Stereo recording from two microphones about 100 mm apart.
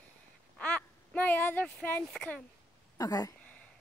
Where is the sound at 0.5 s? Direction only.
10° left (ahead or behind).